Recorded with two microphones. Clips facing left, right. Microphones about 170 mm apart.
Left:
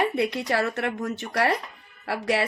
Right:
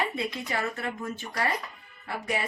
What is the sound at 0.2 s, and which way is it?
A woman's voice, 70° left (ahead or behind).